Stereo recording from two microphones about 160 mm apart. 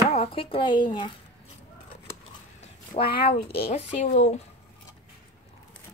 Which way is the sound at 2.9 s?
35° left (ahead or behind).